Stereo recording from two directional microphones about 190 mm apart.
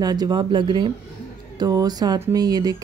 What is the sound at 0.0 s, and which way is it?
Speech, 20° right (ahead or behind).